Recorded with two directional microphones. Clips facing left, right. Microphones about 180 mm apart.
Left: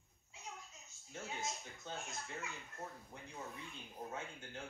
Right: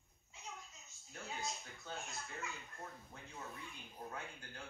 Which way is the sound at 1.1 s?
15° left (ahead or behind).